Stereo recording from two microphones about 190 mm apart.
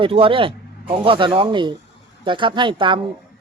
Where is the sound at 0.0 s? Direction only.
30° right (ahead or behind).